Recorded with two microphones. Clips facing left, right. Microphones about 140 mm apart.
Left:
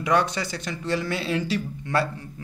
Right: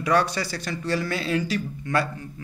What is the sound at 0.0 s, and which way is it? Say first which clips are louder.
Speech: even; 20° left (ahead or behind).